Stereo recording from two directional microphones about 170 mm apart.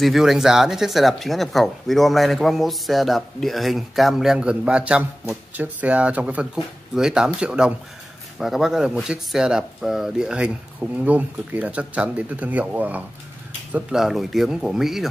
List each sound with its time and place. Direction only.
0.0 s speech: centre (ahead or behind)